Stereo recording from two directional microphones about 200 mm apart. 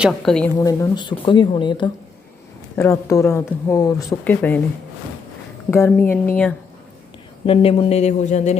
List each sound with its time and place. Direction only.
0.0 s a woman's voice: centre (ahead or behind)
0.5 s speech: 15° left (ahead or behind)
5.7 s speech: 10° left (ahead or behind)
7.4 s speech: 30° left (ahead or behind)